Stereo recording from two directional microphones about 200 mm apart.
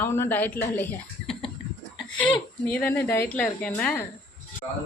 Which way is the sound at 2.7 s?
10° left (ahead or behind).